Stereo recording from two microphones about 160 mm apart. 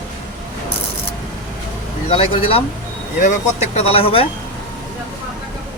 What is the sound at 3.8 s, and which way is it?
Speech, 40° left (ahead or behind).